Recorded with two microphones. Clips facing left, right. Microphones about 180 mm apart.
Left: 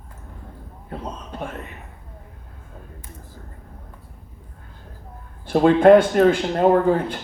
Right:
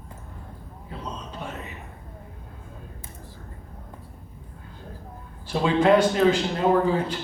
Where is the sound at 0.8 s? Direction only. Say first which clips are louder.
Left 3 dB; 55° left (ahead or behind).